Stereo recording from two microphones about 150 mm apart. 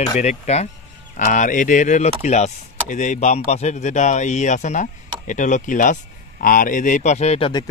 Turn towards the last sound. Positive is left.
turn(degrees=45)  # may be behind; listen again after turning